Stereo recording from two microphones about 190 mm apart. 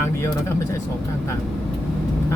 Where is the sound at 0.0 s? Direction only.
15° left (ahead or behind).